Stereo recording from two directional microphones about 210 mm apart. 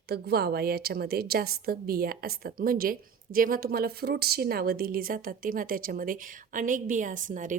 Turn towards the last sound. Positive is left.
turn(degrees=-35)  # may be behind; listen again after turning